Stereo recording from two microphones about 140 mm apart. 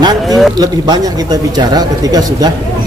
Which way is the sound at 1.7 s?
25° right (ahead or behind).